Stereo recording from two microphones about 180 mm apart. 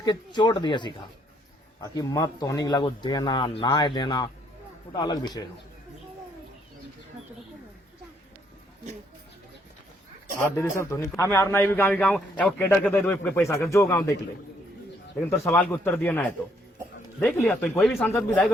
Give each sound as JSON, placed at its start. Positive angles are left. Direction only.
{"t": 0.0, "sound": "speech", "side_deg": 25}
{"t": 10.6, "sound": "a man's voice", "side_deg": 15}
{"t": 15.2, "sound": "a man's voice", "side_deg": 10}